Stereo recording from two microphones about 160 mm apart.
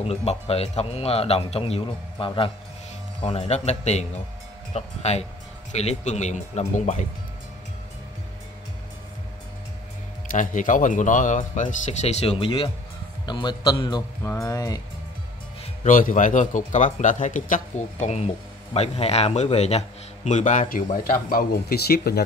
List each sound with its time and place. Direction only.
0.0 s speech: 40° left (ahead or behind)
10.3 s speech: 55° left (ahead or behind); by 14.8 s 20° left (ahead or behind)
15.8 s speech: 55° left (ahead or behind); by 22.2 s 80° left